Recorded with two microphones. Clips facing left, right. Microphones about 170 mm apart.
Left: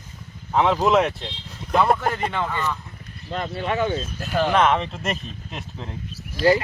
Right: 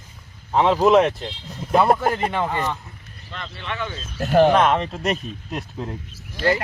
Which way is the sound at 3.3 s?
40° left (ahead or behind).